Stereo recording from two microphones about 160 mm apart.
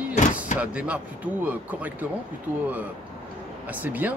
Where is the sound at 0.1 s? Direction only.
50° left (ahead or behind).